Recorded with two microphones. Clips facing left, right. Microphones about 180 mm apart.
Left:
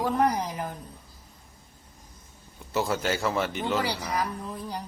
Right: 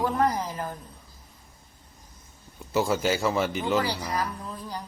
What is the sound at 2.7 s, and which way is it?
Speech, centre (ahead or behind).